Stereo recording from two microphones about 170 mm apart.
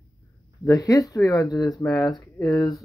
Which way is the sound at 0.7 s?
20° left (ahead or behind).